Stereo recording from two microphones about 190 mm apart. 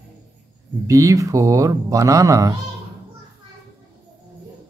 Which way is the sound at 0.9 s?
15° right (ahead or behind).